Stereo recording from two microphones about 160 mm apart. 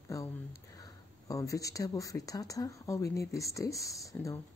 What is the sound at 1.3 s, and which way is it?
Speech, 20° left (ahead or behind).